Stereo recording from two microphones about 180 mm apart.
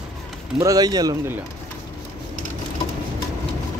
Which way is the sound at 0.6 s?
20° right (ahead or behind).